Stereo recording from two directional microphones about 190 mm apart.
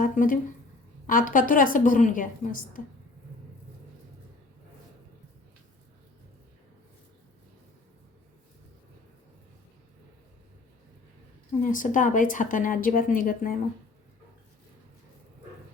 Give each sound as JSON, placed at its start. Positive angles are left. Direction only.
{"t": 0.0, "sound": "a sound", "side_deg": 45}
{"t": 1.0, "sound": "speech", "side_deg": 45}
{"t": 11.6, "sound": "speech", "side_deg": 40}